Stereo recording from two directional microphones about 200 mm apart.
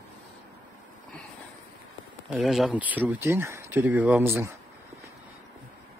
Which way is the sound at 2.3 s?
Centre (ahead or behind).